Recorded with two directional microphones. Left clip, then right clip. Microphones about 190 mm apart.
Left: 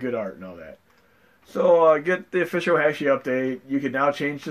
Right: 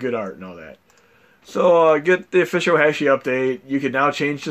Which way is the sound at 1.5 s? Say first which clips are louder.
Right 2 dB; 45° right (ahead or behind).